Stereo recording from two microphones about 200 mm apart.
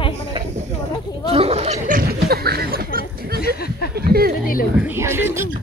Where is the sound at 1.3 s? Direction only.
30° right (ahead or behind); by 4.3 s 50° right (ahead or behind).